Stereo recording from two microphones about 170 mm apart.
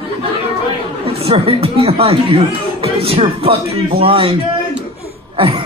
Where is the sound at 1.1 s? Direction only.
35° right (ahead or behind).